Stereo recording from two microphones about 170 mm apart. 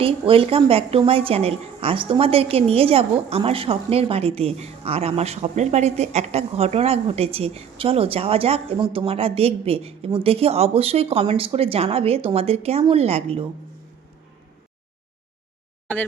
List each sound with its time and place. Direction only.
0.0 s a woman's voice: 30° right (ahead or behind)